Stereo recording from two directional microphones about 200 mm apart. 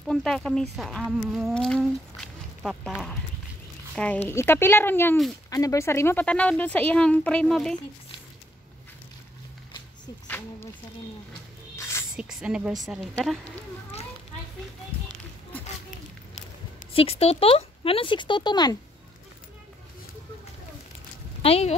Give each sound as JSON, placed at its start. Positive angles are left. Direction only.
{"t": 0.1, "sound": "speech", "side_deg": 0}
{"t": 10.2, "sound": "a sound", "side_deg": 10}
{"t": 12.2, "sound": "a woman's voice", "side_deg": -5}
{"t": 16.3, "sound": "speech", "side_deg": 35}
{"t": 21.4, "sound": "speech", "side_deg": 30}